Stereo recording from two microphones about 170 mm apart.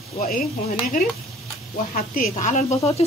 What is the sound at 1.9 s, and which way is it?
Speech, 55° left (ahead or behind).